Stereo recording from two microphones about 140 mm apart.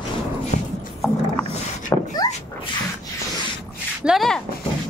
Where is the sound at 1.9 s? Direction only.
20° left (ahead or behind).